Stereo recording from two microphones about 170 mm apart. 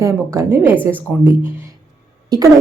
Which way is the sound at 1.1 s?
Centre (ahead or behind).